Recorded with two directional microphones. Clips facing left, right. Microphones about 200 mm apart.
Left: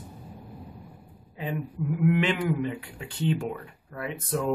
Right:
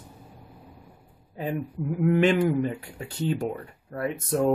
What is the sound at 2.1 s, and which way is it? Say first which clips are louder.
Speech: right 5 dB; 45° right (ahead or behind).